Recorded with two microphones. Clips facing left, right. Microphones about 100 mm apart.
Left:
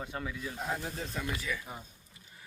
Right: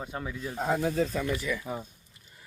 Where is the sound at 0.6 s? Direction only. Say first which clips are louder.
Right 11 dB; 55° right (ahead or behind).